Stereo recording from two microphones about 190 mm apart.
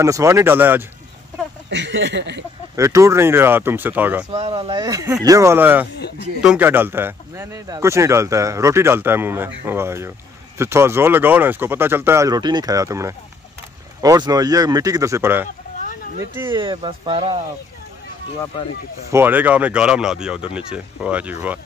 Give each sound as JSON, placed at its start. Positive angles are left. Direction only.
{"t": 0.0, "sound": "speech", "side_deg": -15}
{"t": 1.7, "sound": "speech", "side_deg": -70}
{"t": 2.7, "sound": "speech", "side_deg": -15}
{"t": 4.3, "sound": "speech", "side_deg": -30}
{"t": 16.4, "sound": "speech", "side_deg": -25}
{"t": 19.1, "sound": "speech", "side_deg": -10}